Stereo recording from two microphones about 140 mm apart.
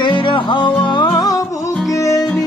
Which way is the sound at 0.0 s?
35° left (ahead or behind).